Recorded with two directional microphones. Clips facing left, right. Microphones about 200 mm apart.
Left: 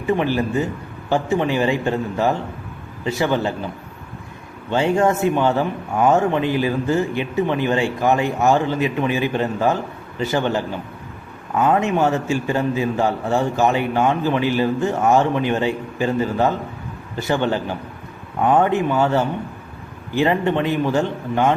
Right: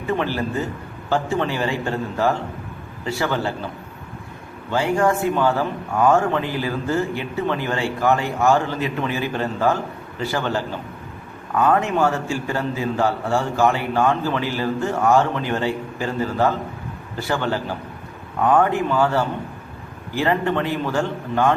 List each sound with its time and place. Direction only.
0.2 s a man's voice: 15° left (ahead or behind)
4.7 s a man's voice: 25° left (ahead or behind)